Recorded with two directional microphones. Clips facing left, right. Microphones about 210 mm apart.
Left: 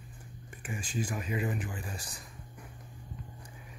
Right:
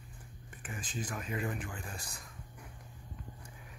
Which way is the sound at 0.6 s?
10° left (ahead or behind).